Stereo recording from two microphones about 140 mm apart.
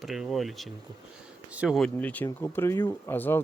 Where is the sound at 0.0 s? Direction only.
Centre (ahead or behind).